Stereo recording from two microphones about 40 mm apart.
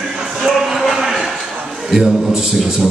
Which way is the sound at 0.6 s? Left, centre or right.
Centre.